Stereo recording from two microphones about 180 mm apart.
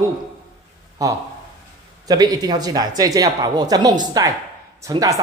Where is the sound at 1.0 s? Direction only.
20° right (ahead or behind).